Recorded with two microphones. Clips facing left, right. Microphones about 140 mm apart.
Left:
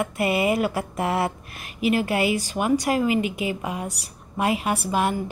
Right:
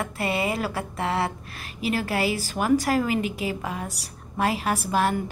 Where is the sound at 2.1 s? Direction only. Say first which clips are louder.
Left 3 dB; 35° right (ahead or behind).